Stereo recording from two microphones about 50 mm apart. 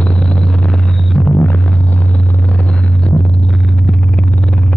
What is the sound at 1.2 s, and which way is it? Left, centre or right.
Music, left.